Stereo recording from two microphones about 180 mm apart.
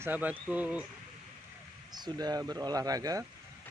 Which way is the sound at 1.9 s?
20° right (ahead or behind).